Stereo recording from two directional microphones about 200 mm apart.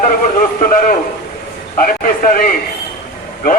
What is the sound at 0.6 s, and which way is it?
Speech, 45° left (ahead or behind).